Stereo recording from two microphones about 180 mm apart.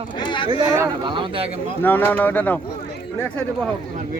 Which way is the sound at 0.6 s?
15° right (ahead or behind).